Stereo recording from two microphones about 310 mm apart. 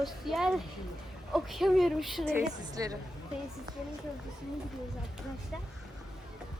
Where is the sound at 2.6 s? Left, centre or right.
Centre.